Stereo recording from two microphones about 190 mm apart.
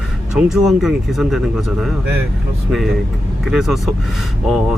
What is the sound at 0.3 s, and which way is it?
Speech, centre (ahead or behind).